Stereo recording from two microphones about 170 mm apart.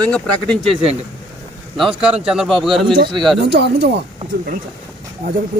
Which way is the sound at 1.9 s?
5° right (ahead or behind).